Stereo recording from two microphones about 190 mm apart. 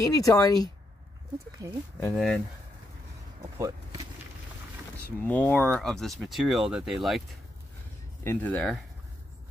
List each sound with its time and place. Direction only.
0.0 s speech: 20° left (ahead or behind)
1.6 s speech: 20° right (ahead or behind)
2.0 s speech: centre (ahead or behind)
5.0 s speech: 10° left (ahead or behind)
8.2 s speech: 10° left (ahead or behind)